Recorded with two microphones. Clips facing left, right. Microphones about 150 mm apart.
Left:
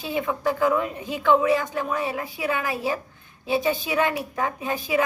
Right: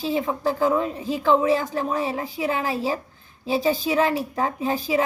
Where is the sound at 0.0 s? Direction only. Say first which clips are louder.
Right 2 dB; 30° right (ahead or behind).